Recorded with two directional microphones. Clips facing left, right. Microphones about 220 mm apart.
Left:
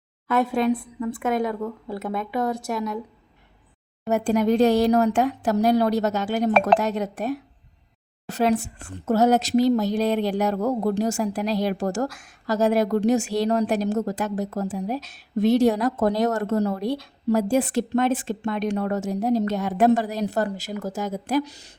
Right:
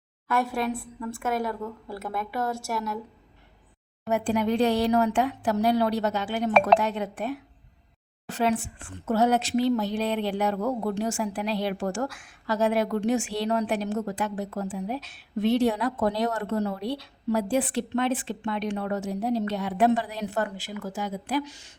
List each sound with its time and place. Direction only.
0.3 s a woman's voice: 20° left (ahead or behind)
4.1 s a woman's voice: 45° left (ahead or behind)